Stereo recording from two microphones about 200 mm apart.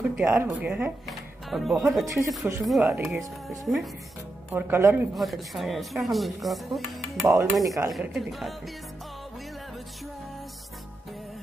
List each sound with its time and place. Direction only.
0.2 s speech: 5° right (ahead or behind)
4.5 s speech: 10° right (ahead or behind)
5.1 s speech: centre (ahead or behind)
7.6 s speech: 15° right (ahead or behind)
7.9 s speech: centre (ahead or behind)